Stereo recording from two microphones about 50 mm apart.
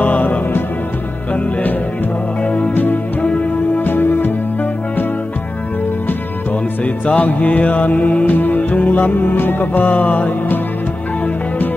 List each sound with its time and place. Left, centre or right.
0.0 s music: left
2.4 s music: left
2.7 s music: left
3.3 s music: left
3.8 s music: left
6.8 s music: left